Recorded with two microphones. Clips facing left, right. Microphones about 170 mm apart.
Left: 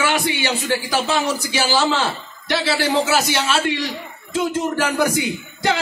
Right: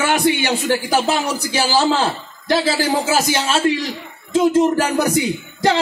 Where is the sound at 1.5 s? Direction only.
35° right (ahead or behind).